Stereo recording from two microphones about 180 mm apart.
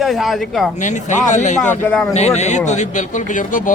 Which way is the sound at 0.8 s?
45° left (ahead or behind).